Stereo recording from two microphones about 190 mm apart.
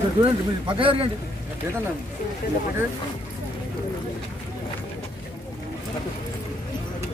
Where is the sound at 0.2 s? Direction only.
25° right (ahead or behind).